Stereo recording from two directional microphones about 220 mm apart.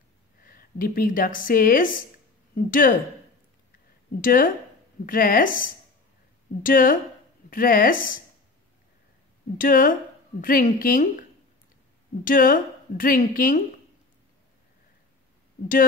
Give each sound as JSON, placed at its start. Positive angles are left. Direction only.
{"t": 0.4, "sound": "a woman's voice", "side_deg": 40}
{"t": 4.2, "sound": "a woman's voice", "side_deg": 40}
{"t": 9.6, "sound": "a woman's voice", "side_deg": 40}
{"t": 12.3, "sound": "a woman's voice", "side_deg": 40}